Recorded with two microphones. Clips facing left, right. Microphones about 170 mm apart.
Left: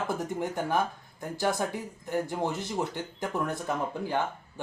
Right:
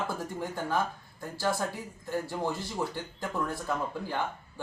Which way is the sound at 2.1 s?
20° left (ahead or behind).